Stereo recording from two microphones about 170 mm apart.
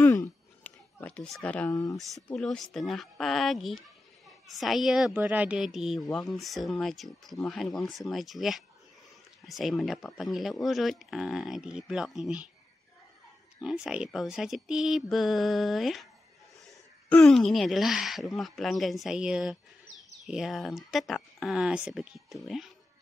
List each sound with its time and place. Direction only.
0.0 s a sound: 15° left (ahead or behind)
1.7 s speech: 20° left (ahead or behind)
2.3 s a woman's voice: centre (ahead or behind)
13.7 s a woman's voice: 5° right (ahead or behind)